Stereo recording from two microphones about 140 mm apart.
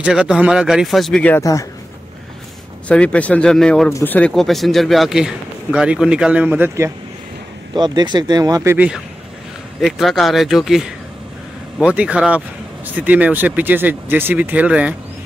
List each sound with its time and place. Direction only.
0.0 s a man's voice: 5° right (ahead or behind)
1.4 s a man's voice: 25° left (ahead or behind)
2.9 s speech: 10° left (ahead or behind)
4.3 s a man's voice: centre (ahead or behind)
7.7 s speech: 30° right (ahead or behind)
8.7 s a man's voice: 10° right (ahead or behind)